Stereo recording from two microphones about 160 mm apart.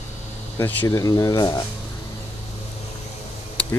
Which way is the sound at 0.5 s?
20° left (ahead or behind).